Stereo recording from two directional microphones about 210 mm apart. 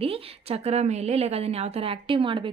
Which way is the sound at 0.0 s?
30° right (ahead or behind).